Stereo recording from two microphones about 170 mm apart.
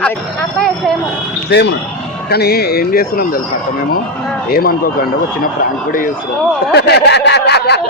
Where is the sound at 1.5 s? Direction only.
90° left.